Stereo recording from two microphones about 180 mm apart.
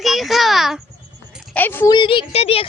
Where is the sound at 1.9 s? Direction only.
25° left (ahead or behind).